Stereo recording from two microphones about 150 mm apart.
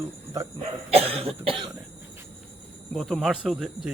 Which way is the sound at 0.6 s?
40° right (ahead or behind).